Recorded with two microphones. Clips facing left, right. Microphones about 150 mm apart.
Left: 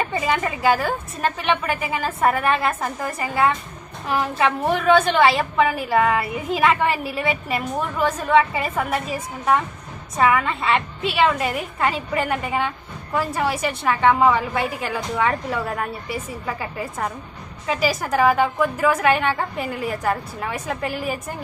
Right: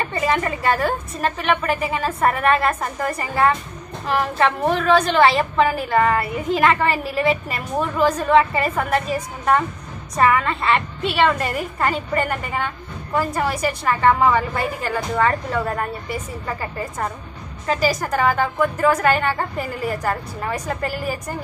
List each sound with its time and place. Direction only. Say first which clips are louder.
0.1 s a woman's voice: right 1 dB; centre (ahead or behind)